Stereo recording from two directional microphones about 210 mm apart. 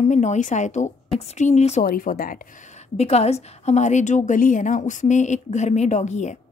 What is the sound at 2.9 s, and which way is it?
A woman's voice, 30° left (ahead or behind).